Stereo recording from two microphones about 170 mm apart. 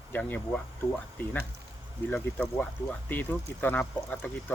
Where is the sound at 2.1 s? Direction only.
5° left (ahead or behind).